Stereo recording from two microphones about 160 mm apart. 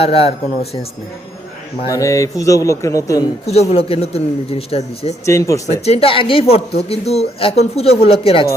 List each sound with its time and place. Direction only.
0.0 s a woman's voice: 35° left (ahead or behind)
1.9 s a man's voice: 20° left (ahead or behind)
3.4 s a woman's voice: 40° left (ahead or behind)
5.2 s a man's voice: 20° left (ahead or behind)
5.8 s a woman's voice: 40° left (ahead or behind)